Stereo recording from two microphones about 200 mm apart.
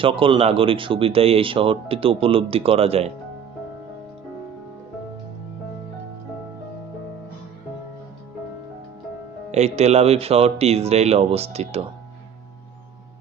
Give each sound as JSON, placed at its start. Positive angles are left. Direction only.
{"t": 0.0, "sound": "speech", "side_deg": -25}
{"t": 9.5, "sound": "speech", "side_deg": -35}